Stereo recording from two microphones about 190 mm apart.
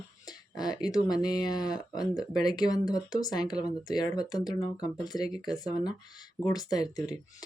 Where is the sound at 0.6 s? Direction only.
20° left (ahead or behind).